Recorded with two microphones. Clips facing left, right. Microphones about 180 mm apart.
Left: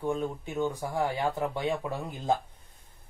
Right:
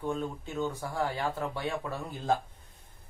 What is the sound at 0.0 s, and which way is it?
Speech, 15° left (ahead or behind).